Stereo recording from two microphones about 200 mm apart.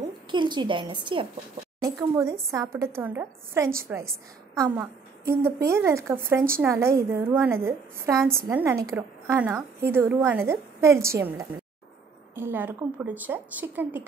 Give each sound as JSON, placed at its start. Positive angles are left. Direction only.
{"t": 0.3, "sound": "a woman's voice", "side_deg": -25}